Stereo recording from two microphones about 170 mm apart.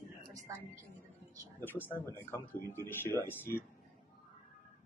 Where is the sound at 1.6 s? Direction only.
10° left (ahead or behind).